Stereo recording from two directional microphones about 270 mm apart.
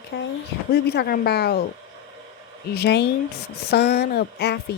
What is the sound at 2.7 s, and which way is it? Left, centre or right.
Speech, left.